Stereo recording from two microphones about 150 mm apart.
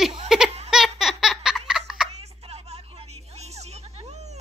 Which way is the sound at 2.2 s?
45° right (ahead or behind).